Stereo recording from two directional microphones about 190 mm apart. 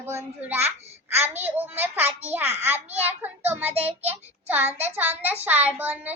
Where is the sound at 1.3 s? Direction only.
10° right (ahead or behind).